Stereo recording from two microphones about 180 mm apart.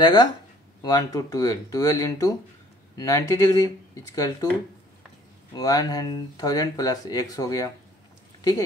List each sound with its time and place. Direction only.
0.0 s speech: 25° left (ahead or behind)